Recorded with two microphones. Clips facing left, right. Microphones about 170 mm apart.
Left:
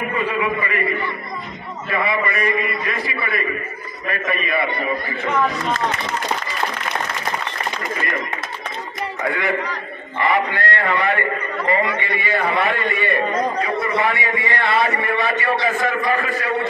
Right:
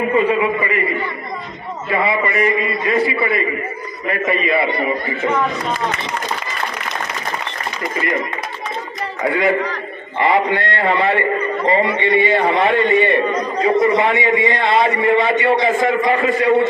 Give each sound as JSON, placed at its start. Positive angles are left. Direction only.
{"t": 0.1, "sound": "a sound", "side_deg": -25}
{"t": 1.9, "sound": "a man's voice", "side_deg": -25}
{"t": 9.2, "sound": "a man's voice", "side_deg": -25}